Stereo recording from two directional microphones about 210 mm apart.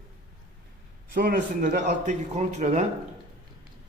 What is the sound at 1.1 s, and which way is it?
Speech, 45° right (ahead or behind).